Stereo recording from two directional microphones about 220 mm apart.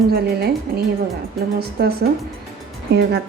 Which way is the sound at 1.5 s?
45° right (ahead or behind).